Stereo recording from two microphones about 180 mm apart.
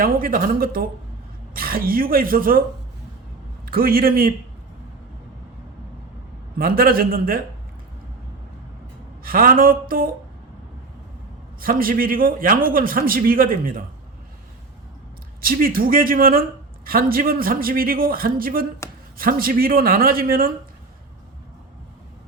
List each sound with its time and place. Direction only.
0.0 s a man's voice: 50° right (ahead or behind)
3.7 s a man's voice: 55° right (ahead or behind)
6.6 s a man's voice: 55° right (ahead or behind)
9.2 s a man's voice: 55° right (ahead or behind)
11.6 s a man's voice: 55° right (ahead or behind)
15.4 s a man's voice: 55° right (ahead or behind)